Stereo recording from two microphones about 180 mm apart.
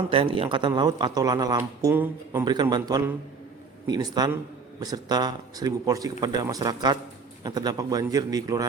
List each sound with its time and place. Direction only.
0.1 s speech: 30° right (ahead or behind)